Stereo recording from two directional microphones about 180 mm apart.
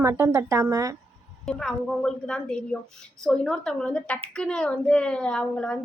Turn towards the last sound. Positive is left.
turn(degrees=5)  # may be behind; listen again after turning